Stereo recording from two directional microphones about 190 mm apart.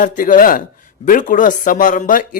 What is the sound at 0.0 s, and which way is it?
Speech, 45° left (ahead or behind).